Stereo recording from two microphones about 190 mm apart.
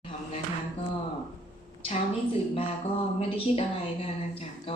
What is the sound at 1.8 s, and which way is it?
A woman's voice, 30° left (ahead or behind).